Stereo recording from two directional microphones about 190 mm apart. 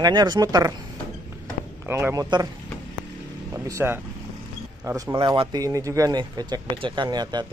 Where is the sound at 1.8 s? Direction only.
15° right (ahead or behind).